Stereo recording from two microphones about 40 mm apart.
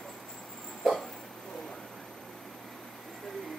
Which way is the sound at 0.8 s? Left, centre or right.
Centre.